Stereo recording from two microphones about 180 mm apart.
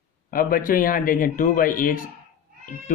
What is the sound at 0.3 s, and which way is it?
Speech, 50° left (ahead or behind).